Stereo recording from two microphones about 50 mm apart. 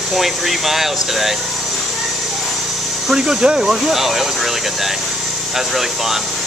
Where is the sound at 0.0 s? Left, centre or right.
Centre.